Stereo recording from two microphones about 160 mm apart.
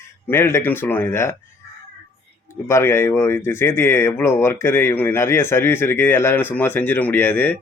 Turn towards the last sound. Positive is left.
turn(degrees=10)  # may be behind; listen again after turning